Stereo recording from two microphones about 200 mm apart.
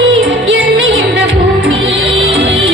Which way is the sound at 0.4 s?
65° right (ahead or behind).